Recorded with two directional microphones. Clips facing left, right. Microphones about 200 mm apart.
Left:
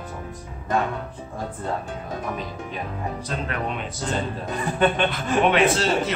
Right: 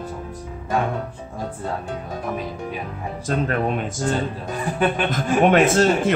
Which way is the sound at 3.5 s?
45° right (ahead or behind).